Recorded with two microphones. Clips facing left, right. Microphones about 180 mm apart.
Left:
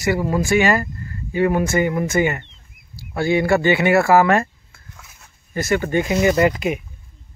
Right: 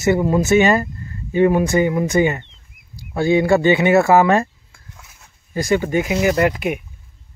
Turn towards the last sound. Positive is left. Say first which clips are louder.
# even
turn(degrees=0)  # may be behind; listen again after turning